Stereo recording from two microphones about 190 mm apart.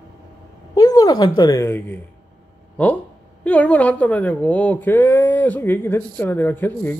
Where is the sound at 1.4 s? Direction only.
15° left (ahead or behind).